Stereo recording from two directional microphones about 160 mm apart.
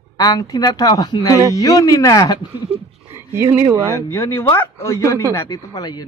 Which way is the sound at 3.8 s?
15° left (ahead or behind).